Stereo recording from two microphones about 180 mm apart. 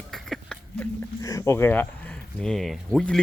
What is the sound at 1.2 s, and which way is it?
Speech, 20° left (ahead or behind).